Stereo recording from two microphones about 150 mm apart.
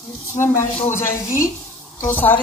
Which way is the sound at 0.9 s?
20° left (ahead or behind).